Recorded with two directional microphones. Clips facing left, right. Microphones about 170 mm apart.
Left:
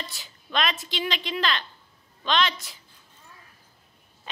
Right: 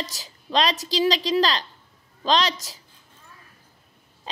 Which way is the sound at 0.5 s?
35° right (ahead or behind).